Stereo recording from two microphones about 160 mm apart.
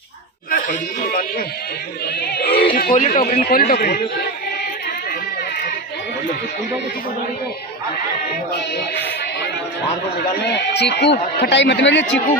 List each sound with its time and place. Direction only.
0.5 s speech: 55° left (ahead or behind)
2.1 s speech: 85° left
2.9 s a man's voice: 55° left (ahead or behind); by 4.3 s 75° left (ahead or behind)
10.4 s a man's voice: 90° left